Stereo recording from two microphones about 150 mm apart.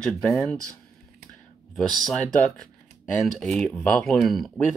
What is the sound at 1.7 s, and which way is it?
Speech, centre (ahead or behind).